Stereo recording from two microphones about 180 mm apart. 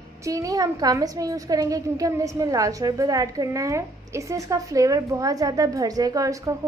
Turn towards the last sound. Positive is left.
turn(degrees=-20)  # may be behind; listen again after turning